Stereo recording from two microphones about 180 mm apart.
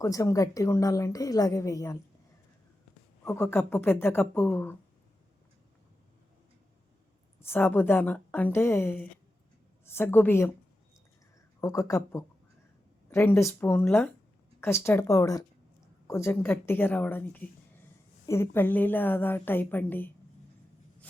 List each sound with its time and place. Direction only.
0.0 s a woman's voice: 20° left (ahead or behind)
3.2 s a woman's voice: 15° left (ahead or behind)
7.4 s a woman's voice: 10° left (ahead or behind)
11.6 s a woman's voice: 15° left (ahead or behind)